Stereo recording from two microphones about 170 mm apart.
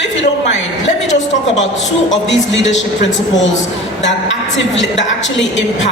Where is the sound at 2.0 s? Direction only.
90° left.